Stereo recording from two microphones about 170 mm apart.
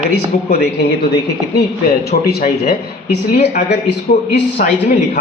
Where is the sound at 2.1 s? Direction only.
65° left (ahead or behind).